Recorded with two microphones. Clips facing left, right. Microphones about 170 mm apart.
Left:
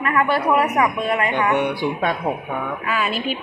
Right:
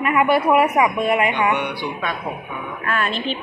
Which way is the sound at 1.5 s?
40° left (ahead or behind).